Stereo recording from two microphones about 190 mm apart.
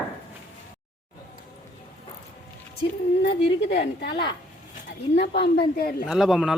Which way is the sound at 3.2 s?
60° left (ahead or behind).